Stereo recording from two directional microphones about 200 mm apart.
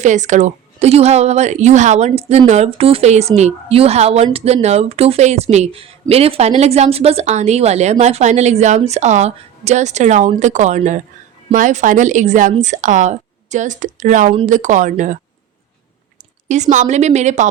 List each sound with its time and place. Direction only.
0.0 s a woman's voice: 35° right (ahead or behind)
16.5 s a woman's voice: 35° right (ahead or behind)